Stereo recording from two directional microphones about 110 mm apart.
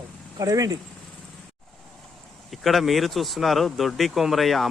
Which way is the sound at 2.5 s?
Centre (ahead or behind).